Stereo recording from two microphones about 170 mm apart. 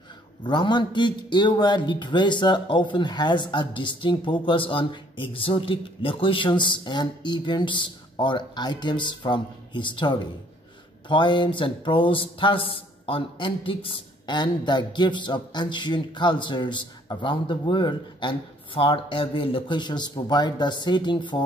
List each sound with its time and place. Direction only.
0.4 s a man's voice: 25° left (ahead or behind)